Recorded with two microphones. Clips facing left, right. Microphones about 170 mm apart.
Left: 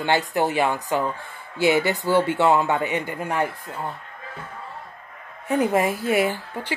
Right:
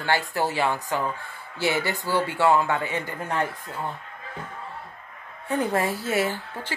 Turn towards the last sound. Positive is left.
turn(degrees=15)  # may be behind; listen again after turning